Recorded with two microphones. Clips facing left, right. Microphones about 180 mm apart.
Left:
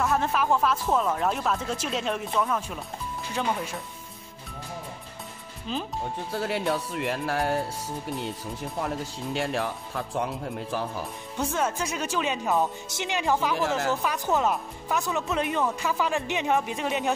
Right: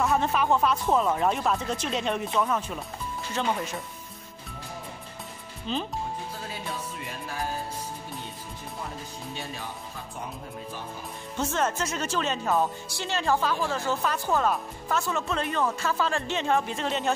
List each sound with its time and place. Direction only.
0.0 s speech: centre (ahead or behind)
5.7 s speech: 5° left (ahead or behind)
6.3 s speech: 70° left (ahead or behind)
8.8 s speech: 80° left
11.4 s speech: 10° left (ahead or behind)
13.7 s speech: 80° left
14.0 s speech: 15° left (ahead or behind)